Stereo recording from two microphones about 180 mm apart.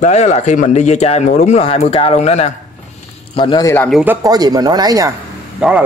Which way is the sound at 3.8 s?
Centre (ahead or behind).